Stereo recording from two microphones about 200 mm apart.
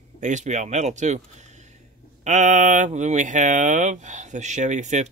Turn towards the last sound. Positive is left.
turn(degrees=-35)  # may be behind; listen again after turning